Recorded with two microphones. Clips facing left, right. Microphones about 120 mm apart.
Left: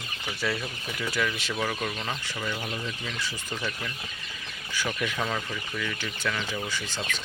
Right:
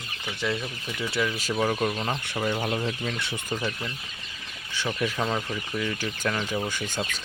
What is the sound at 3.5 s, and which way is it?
Speech, 20° right (ahead or behind).